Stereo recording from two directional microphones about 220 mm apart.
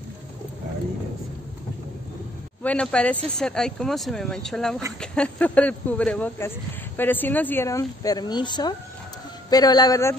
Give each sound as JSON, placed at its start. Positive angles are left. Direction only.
{"t": 2.6, "sound": "speech", "side_deg": 5}